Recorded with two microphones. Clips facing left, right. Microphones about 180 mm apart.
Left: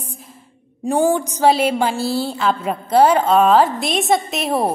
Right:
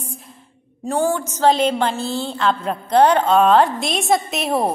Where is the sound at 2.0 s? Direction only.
40° left (ahead or behind).